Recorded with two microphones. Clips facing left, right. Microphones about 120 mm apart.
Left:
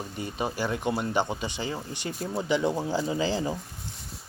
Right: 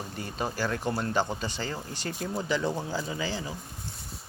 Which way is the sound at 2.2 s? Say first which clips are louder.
Left 2 dB; 5° left (ahead or behind).